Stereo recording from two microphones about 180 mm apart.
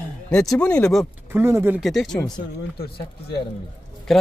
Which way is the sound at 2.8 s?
60° left (ahead or behind).